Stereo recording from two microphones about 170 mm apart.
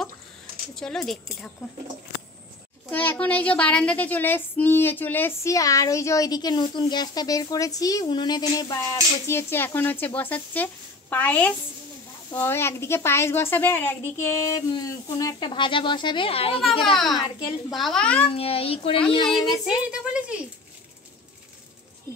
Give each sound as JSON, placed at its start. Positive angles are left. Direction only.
{"t": 0.7, "sound": "speech", "side_deg": 0}
{"t": 2.9, "sound": "a woman's voice", "side_deg": 10}
{"t": 16.5, "sound": "speech", "side_deg": 0}
{"t": 17.1, "sound": "speech", "side_deg": 25}
{"t": 17.7, "sound": "speech", "side_deg": 0}
{"t": 18.3, "sound": "a child's voice", "side_deg": 35}
{"t": 19.9, "sound": "speech", "side_deg": -5}